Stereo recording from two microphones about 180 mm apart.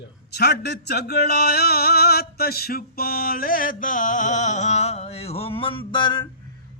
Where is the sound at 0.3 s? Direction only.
65° left (ahead or behind); by 6.2 s 25° left (ahead or behind).